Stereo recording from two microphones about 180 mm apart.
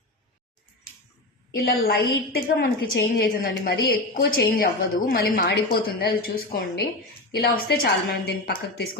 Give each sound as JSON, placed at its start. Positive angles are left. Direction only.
{"t": 1.6, "sound": "a woman's voice", "side_deg": 55}